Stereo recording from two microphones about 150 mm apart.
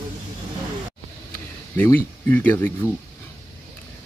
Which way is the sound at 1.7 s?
15° left (ahead or behind).